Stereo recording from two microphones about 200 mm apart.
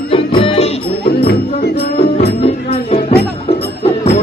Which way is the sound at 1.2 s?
50° left (ahead or behind).